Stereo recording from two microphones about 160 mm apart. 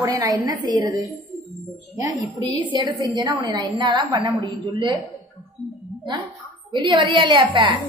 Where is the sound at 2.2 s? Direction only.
45° left (ahead or behind).